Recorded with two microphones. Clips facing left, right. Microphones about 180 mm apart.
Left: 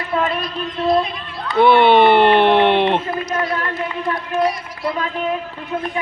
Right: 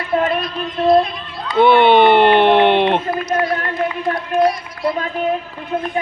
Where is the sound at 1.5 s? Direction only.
Centre (ahead or behind).